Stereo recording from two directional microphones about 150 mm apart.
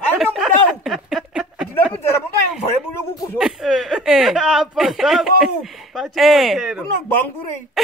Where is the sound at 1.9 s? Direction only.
15° left (ahead or behind).